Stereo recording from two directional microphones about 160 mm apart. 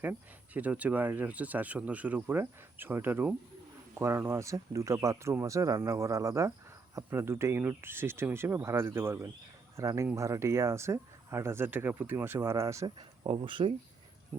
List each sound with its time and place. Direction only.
0.0 s speech: 10° right (ahead or behind)
13.2 s speech: 35° right (ahead or behind)